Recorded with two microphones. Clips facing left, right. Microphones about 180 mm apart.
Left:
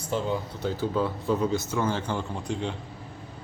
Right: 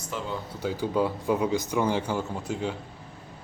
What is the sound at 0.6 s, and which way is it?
Speech, 10° right (ahead or behind).